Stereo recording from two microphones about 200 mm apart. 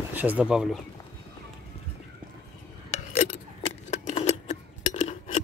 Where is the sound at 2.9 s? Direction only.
35° left (ahead or behind).